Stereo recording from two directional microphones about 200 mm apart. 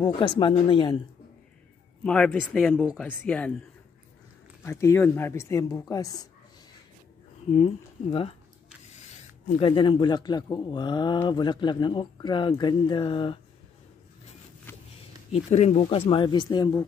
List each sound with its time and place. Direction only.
0.4 s speech: 25° left (ahead or behind)
2.0 s speech: 5° left (ahead or behind)
4.6 s speech: 15° left (ahead or behind)
7.5 s speech: 30° left (ahead or behind)
9.5 s speech: 25° left (ahead or behind)
14.7 s a sound: 10° left (ahead or behind)
15.3 s speech: 30° left (ahead or behind)